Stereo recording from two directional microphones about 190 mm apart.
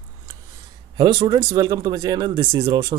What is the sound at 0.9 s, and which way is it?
Speech, 20° right (ahead or behind).